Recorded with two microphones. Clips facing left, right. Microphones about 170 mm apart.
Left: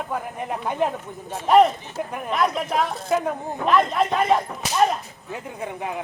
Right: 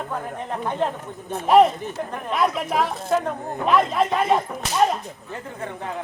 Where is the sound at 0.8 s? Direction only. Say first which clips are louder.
Left 2 dB; 10° left (ahead or behind).